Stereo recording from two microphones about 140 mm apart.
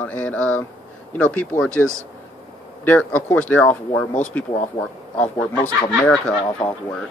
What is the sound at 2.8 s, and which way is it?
Speech, 10° left (ahead or behind).